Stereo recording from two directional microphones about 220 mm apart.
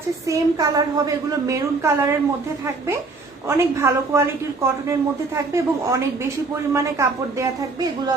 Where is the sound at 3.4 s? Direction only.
10° right (ahead or behind).